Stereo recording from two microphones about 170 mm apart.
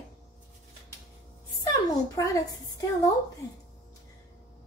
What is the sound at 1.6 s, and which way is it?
Speech, 20° left (ahead or behind).